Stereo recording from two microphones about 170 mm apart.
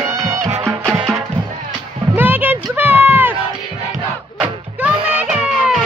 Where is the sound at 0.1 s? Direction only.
20° right (ahead or behind).